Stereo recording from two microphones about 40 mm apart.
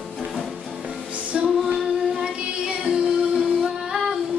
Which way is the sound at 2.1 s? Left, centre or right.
Right.